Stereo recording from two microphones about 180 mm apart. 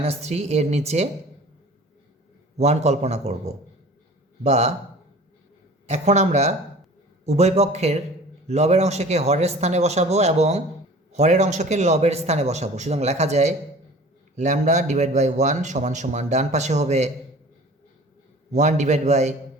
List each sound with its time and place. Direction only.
0.0 s speech: 35° right (ahead or behind)
2.6 s speech: 40° right (ahead or behind)
5.9 s speech: 40° right (ahead or behind)
18.5 s speech: 40° right (ahead or behind)